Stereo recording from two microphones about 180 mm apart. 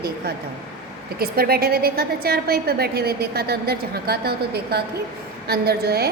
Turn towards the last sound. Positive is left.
turn(degrees=-60)  # may be behind; listen again after turning